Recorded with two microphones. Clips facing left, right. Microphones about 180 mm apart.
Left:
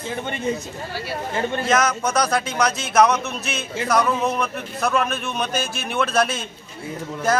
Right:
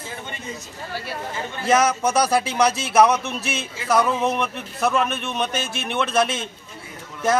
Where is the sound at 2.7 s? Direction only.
30° right (ahead or behind).